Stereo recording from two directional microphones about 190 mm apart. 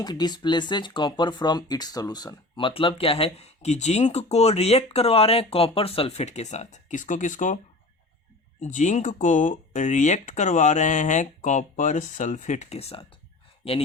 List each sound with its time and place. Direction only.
0.0 s speech: 20° left (ahead or behind); by 7.6 s 40° left (ahead or behind)
8.6 s speech: 40° left (ahead or behind)